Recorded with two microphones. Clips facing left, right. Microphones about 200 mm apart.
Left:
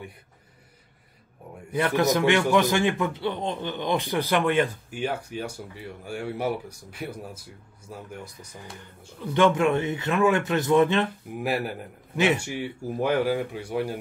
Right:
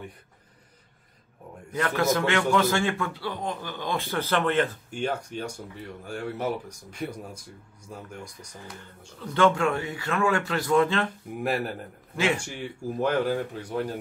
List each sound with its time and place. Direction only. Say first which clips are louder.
1.7 s a man's voice: left 2 dB; 15° left (ahead or behind)
11.4 s a man's voice: even; 5° left (ahead or behind)